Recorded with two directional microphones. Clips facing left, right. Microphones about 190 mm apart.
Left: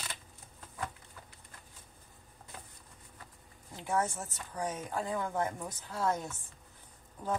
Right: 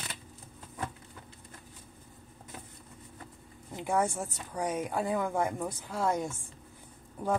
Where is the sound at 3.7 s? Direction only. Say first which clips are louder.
Right 3 dB; 10° right (ahead or behind).